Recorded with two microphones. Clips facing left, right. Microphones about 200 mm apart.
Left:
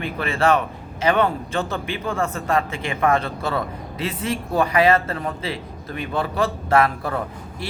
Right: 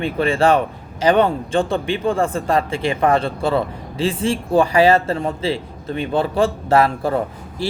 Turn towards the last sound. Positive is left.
turn(degrees=-30)  # may be behind; listen again after turning